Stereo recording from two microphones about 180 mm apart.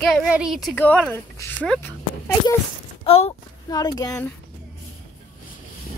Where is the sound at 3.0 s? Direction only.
30° left (ahead or behind).